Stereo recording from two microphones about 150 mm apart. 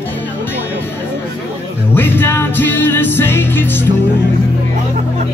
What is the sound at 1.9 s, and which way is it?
Music, 15° left (ahead or behind).